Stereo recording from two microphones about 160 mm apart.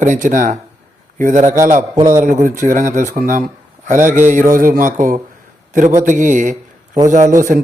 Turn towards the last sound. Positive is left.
turn(degrees=-50)  # may be behind; listen again after turning